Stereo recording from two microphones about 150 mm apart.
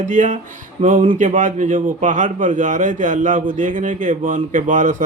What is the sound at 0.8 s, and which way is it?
Speech, 35° right (ahead or behind).